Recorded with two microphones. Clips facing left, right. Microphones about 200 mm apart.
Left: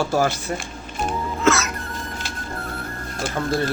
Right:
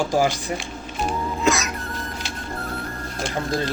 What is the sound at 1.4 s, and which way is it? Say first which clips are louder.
Music: left 3 dB; 15° right (ahead or behind).